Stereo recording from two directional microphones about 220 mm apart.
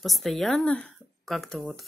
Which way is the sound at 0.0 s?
Centre (ahead or behind).